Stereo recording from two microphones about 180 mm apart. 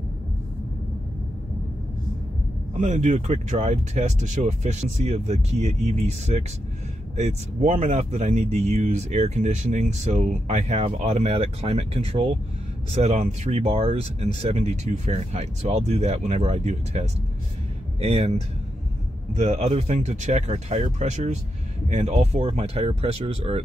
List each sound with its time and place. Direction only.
2.8 s speech: 40° right (ahead or behind)